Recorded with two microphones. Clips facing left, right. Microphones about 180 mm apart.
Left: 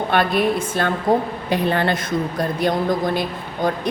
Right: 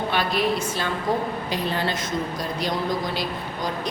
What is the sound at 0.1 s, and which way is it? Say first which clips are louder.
A woman's voice: left 6 dB; 55° left (ahead or behind).